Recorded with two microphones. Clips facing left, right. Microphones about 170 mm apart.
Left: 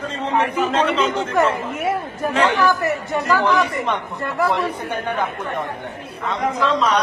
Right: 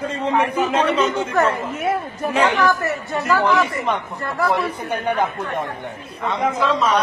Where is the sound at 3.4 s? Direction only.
Centre (ahead or behind).